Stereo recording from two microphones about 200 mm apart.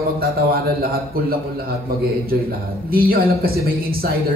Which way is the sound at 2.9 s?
50° right (ahead or behind).